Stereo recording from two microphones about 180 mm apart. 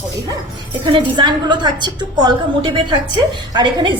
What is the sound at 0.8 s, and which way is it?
A woman's voice, 25° right (ahead or behind).